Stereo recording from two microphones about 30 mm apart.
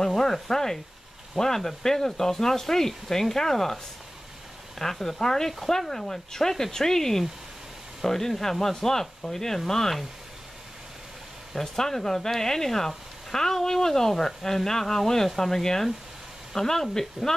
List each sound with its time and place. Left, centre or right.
0.0 s speech: centre
11.5 s speech: centre
17.2 s speech: centre